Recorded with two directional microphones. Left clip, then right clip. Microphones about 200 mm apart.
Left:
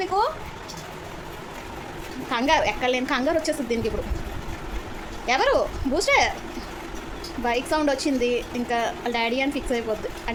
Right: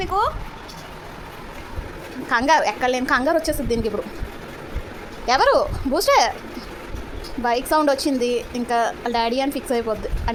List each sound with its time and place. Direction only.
0.0 s a woman's voice: 20° right (ahead or behind)
2.3 s a woman's voice: 20° right (ahead or behind)
5.2 s a woman's voice: 20° right (ahead or behind)
7.4 s a woman's voice: 20° right (ahead or behind)